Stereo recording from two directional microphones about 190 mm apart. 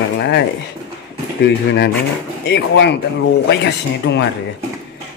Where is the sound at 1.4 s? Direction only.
60° left (ahead or behind).